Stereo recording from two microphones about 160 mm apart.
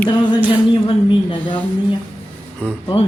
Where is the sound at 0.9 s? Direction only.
30° left (ahead or behind).